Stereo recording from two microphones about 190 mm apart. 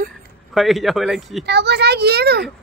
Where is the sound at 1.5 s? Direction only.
60° right (ahead or behind).